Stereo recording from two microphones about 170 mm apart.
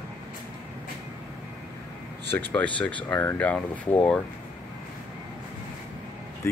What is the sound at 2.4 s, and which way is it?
Speech, 10° left (ahead or behind).